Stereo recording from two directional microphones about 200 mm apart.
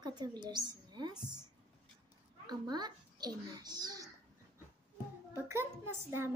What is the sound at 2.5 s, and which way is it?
A child's voice, 20° right (ahead or behind).